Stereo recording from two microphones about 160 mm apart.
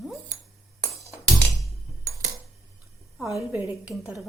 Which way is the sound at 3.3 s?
5° right (ahead or behind).